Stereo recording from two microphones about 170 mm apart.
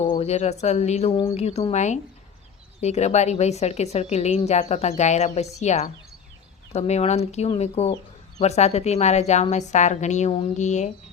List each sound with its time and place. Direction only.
0.1 s a woman's voice: 40° left (ahead or behind)